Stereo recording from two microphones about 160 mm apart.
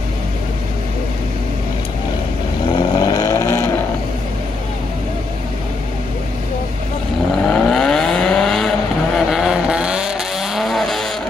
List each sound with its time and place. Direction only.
2.7 s vehicle: 25° left (ahead or behind)
7.4 s vehicle: 5° left (ahead or behind)